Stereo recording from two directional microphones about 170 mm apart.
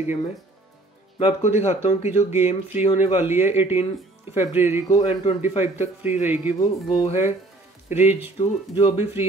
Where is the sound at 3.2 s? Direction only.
10° right (ahead or behind).